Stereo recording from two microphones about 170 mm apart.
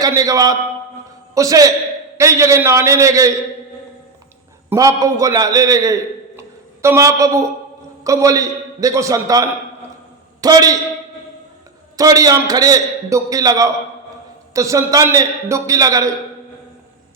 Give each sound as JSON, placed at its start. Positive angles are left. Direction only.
{"t": 0.0, "sound": "a man's voice", "side_deg": -20}
{"t": 4.7, "sound": "a man's voice", "side_deg": -20}
{"t": 11.9, "sound": "a man's voice", "side_deg": -20}